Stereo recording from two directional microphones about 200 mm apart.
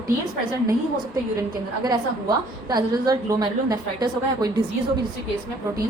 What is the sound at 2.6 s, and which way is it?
A woman's voice, 20° right (ahead or behind).